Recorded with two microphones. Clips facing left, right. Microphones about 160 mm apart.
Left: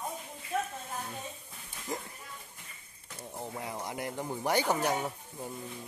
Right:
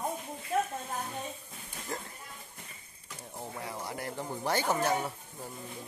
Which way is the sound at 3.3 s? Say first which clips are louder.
Left 1 dB; 20° left (ahead or behind).